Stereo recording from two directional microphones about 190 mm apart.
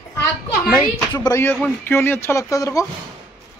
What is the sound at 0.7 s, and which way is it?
Speech, 20° left (ahead or behind).